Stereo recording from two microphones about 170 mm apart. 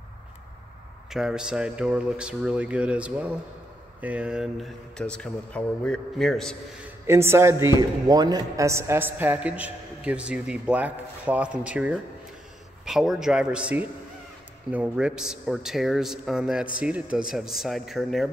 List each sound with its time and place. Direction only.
1.1 s a man's voice: 5° right (ahead or behind)
6.8 s a man's voice: 15° right (ahead or behind)